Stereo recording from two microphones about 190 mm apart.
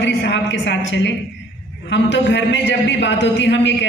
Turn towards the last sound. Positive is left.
turn(degrees=70)  # may be behind; listen again after turning